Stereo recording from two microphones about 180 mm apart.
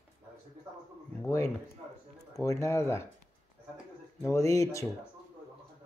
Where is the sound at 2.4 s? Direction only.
15° left (ahead or behind).